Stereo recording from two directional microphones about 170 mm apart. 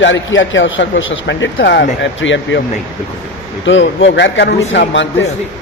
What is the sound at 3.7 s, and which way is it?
A man's voice, 90° left.